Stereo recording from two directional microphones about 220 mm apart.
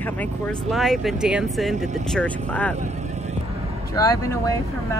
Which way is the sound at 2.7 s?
30° right (ahead or behind).